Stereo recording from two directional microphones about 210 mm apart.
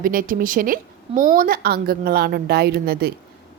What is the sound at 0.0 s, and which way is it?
A woman's voice, 40° right (ahead or behind).